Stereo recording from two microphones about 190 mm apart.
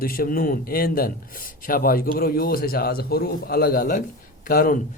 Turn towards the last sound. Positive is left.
turn(degrees=50)  # may be behind; listen again after turning